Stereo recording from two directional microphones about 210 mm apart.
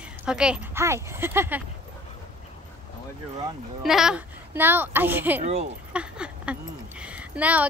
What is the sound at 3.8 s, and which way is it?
A woman's voice, centre (ahead or behind).